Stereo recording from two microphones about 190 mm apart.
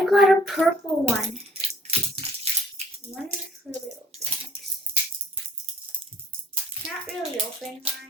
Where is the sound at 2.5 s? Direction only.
35° right (ahead or behind).